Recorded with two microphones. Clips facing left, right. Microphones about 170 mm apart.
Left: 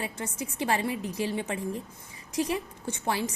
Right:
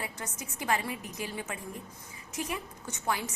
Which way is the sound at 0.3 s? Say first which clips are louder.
Left 3 dB; 30° left (ahead or behind).